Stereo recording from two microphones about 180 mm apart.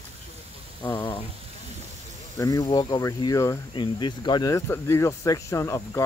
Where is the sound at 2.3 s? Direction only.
20° left (ahead or behind).